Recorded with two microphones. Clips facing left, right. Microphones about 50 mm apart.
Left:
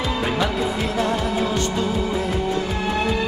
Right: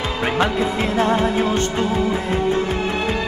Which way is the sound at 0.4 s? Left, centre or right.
Right.